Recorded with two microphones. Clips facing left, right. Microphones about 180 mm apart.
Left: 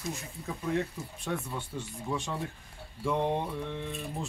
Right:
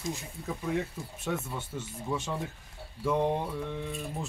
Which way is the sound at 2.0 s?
5° right (ahead or behind).